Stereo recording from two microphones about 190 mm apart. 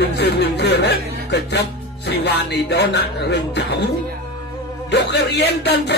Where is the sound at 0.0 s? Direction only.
60° left (ahead or behind).